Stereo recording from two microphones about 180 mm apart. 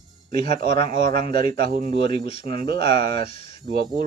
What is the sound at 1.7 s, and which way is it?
Speech, 50° right (ahead or behind).